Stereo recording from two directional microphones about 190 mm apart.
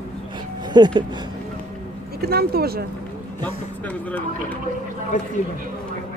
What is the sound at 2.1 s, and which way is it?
Speech, 55° right (ahead or behind).